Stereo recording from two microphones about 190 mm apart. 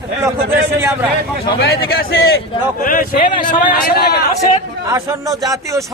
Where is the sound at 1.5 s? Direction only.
55° left (ahead or behind).